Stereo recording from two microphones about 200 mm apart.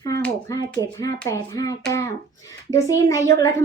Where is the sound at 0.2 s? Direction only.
15° left (ahead or behind).